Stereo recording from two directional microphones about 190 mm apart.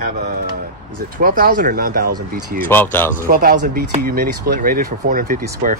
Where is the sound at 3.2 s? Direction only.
50° right (ahead or behind).